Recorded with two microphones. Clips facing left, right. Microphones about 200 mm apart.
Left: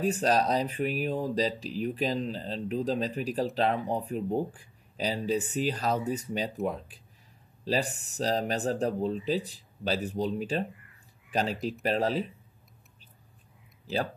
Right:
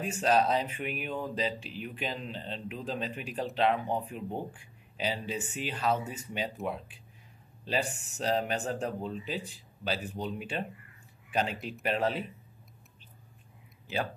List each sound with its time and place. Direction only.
0.0 s speech: 35° left (ahead or behind)